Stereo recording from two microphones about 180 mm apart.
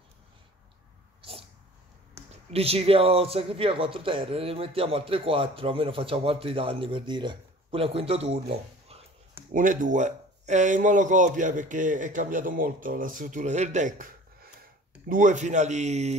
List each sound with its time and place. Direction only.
2.2 s a sound: 15° right (ahead or behind)
2.5 s speech: 35° right (ahead or behind)
9.5 s speech: 45° right (ahead or behind)